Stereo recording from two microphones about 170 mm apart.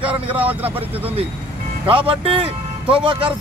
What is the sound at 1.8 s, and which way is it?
A man's voice, 30° right (ahead or behind).